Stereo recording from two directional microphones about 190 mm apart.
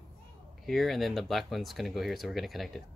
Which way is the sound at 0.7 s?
Centre (ahead or behind).